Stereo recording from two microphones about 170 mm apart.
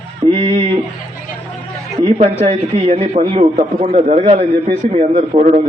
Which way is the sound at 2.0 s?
30° right (ahead or behind).